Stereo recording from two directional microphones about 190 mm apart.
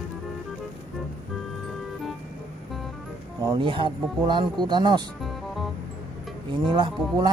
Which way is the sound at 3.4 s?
25° right (ahead or behind).